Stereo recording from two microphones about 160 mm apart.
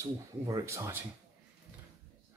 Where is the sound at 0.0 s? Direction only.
20° right (ahead or behind).